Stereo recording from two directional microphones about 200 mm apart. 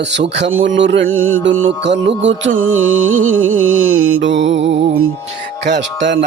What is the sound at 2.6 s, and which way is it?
Music, 90° right.